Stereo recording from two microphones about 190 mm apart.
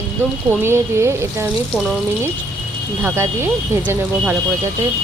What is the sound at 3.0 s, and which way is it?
Speech, 10° right (ahead or behind).